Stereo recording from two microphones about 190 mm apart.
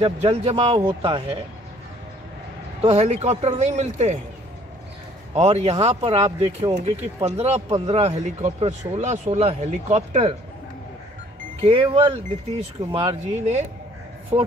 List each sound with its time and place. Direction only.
0.0 s speech: 35° right (ahead or behind)
2.8 s speech: 35° right (ahead or behind)
5.3 s speech: 35° right (ahead or behind)
11.6 s speech: 30° right (ahead or behind)
14.3 s speech: 15° right (ahead or behind)